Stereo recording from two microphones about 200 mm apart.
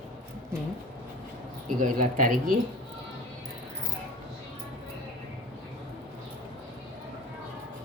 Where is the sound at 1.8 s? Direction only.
40° right (ahead or behind).